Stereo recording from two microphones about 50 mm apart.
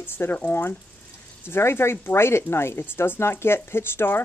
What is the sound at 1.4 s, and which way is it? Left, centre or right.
Speech, left.